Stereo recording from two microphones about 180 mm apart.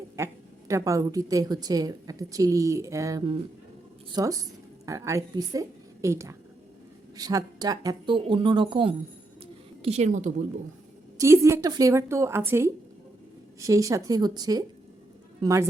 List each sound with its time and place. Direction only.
0.2 s a woman's voice: 15° right (ahead or behind); by 10.3 s 45° right (ahead or behind)
11.2 s a woman's voice: 15° right (ahead or behind)